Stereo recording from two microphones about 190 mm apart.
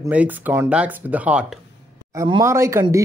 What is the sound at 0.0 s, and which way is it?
Speech, 10° right (ahead or behind).